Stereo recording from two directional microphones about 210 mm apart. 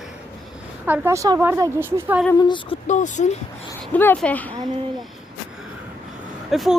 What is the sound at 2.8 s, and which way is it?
Speech, 35° left (ahead or behind).